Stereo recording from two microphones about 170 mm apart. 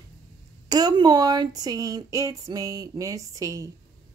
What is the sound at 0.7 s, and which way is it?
Speech, 25° right (ahead or behind).